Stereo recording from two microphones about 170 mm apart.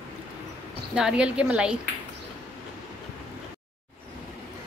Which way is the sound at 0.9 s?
5° right (ahead or behind).